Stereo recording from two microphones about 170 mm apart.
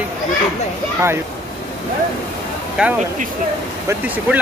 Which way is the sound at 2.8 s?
5° right (ahead or behind).